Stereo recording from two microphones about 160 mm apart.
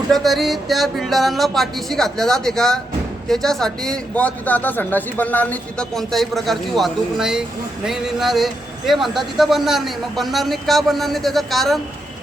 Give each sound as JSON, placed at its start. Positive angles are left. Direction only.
{"t": 0.1, "sound": "speech", "side_deg": 0}